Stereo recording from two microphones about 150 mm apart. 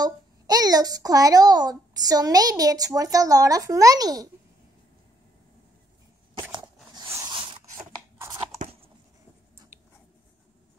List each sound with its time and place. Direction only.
0.0 s a child's voice: 25° right (ahead or behind)
7.2 s zipper: 35° right (ahead or behind)